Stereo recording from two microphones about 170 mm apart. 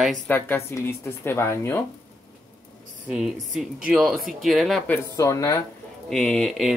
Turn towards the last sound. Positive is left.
turn(degrees=0)  # may be behind; listen again after turning